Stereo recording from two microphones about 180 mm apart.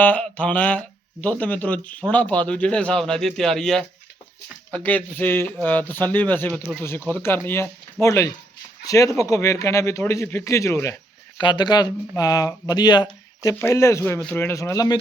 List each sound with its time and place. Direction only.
0.0 s speech: 10° left (ahead or behind)